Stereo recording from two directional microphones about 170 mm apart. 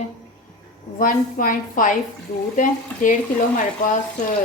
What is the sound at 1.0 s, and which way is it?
A woman's voice, 55° left (ahead or behind).